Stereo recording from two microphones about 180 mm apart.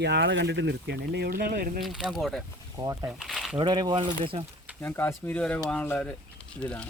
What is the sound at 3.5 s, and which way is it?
Speech, 25° right (ahead or behind).